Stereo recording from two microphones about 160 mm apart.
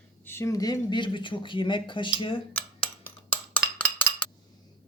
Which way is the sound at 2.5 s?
10° left (ahead or behind).